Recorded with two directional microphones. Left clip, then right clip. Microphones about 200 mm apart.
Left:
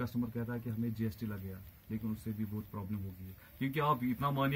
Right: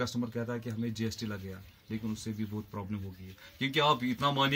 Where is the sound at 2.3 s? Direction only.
40° right (ahead or behind).